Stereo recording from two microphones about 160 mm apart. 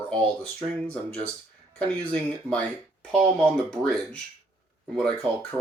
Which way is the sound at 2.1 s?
5° left (ahead or behind).